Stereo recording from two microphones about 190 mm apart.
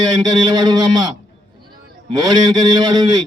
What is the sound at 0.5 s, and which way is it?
Speech, 20° right (ahead or behind).